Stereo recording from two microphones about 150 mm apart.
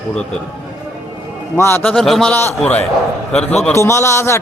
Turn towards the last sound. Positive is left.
turn(degrees=20)  # may be behind; listen again after turning